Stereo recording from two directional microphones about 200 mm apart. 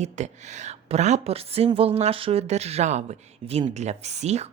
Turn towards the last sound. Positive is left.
turn(degrees=-35)  # may be behind; listen again after turning